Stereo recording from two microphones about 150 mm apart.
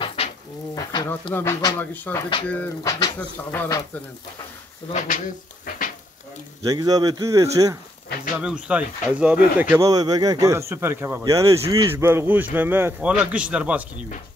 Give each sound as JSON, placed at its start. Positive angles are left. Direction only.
{"t": 0.0, "sound": "a sound", "side_deg": 40}
{"t": 0.7, "sound": "speech", "side_deg": 25}
{"t": 2.8, "sound": "speech", "side_deg": 20}
{"t": 4.9, "sound": "speech", "side_deg": 60}
{"t": 6.6, "sound": "speech", "side_deg": -25}
{"t": 8.4, "sound": "speech", "side_deg": -5}
{"t": 9.8, "sound": "speech", "side_deg": -25}